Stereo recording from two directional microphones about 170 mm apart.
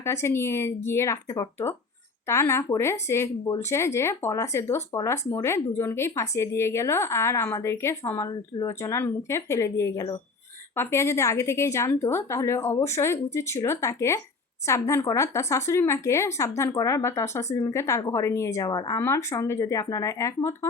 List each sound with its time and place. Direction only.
0.0 s speech: 15° left (ahead or behind)